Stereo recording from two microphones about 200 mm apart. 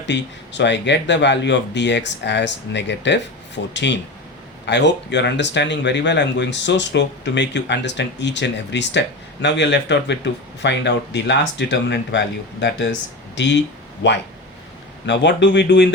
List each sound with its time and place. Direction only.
0.0 s speech: 60° left (ahead or behind)